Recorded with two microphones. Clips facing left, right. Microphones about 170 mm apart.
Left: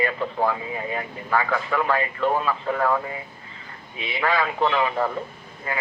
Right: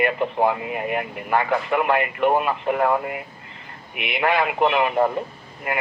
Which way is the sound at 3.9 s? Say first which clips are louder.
Right 3 dB; 65° right (ahead or behind).